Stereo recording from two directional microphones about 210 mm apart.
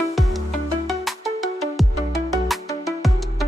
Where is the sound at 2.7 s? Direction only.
15° left (ahead or behind).